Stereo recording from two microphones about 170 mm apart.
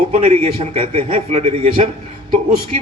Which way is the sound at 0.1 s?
35° right (ahead or behind).